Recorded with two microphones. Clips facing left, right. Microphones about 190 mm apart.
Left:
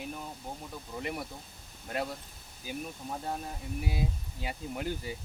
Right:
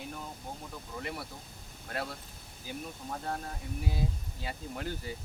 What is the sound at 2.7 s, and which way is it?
Speech, 15° left (ahead or behind).